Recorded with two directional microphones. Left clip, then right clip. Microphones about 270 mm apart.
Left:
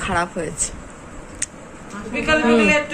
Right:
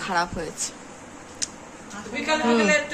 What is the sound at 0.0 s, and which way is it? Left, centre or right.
Speech, centre.